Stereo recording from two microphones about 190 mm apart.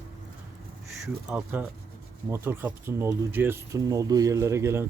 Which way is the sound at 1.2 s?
10° right (ahead or behind).